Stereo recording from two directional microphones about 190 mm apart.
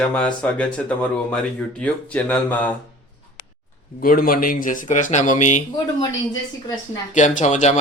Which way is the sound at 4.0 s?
50° left (ahead or behind).